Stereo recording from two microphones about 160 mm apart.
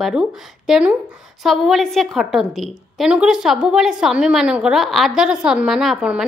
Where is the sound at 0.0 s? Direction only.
5° right (ahead or behind).